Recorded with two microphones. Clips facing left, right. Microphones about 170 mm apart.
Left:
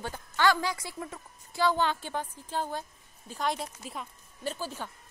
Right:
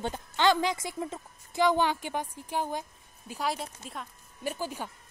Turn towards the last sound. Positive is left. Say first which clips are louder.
# right 1 dB
turn(degrees=-15)  # may be behind; listen again after turning